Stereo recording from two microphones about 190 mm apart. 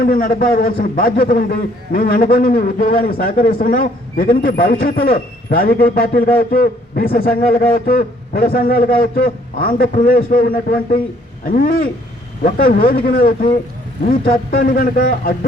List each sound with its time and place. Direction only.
0.0 s a man's voice: 50° left (ahead or behind)